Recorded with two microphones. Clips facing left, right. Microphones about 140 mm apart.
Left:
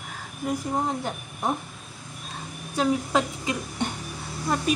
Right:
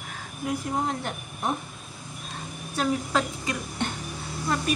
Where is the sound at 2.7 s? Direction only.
15° left (ahead or behind).